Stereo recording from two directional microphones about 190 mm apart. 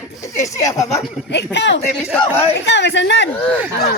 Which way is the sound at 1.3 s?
65° left (ahead or behind).